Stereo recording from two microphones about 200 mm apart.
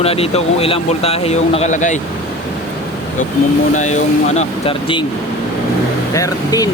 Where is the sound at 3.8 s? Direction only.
35° left (ahead or behind).